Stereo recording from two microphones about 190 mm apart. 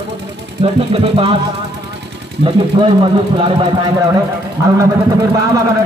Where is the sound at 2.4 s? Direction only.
25° right (ahead or behind).